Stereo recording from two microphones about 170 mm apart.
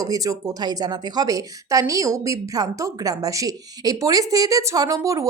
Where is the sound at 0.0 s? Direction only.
20° right (ahead or behind).